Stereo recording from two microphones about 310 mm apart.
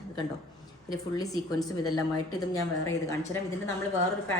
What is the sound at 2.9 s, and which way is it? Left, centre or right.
Speech, centre.